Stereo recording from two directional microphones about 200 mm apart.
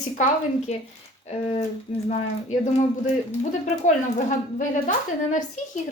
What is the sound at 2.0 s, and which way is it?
Speech, 35° left (ahead or behind).